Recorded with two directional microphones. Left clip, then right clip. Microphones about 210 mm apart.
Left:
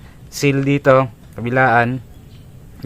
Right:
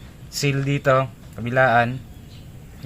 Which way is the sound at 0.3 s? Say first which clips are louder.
Left 7 dB; 45° left (ahead or behind).